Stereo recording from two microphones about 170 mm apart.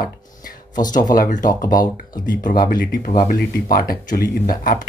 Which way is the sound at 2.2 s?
55° left (ahead or behind).